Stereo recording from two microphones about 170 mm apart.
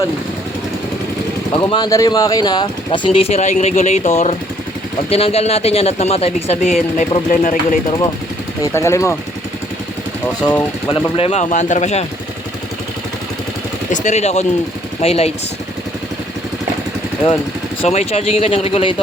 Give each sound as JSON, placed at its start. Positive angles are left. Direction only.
{"t": 1.5, "sound": "speech", "side_deg": 25}
{"t": 8.7, "sound": "speech", "side_deg": 15}
{"t": 11.2, "sound": "speech", "side_deg": 40}
{"t": 13.9, "sound": "speech", "side_deg": 45}
{"t": 17.8, "sound": "speech", "side_deg": 40}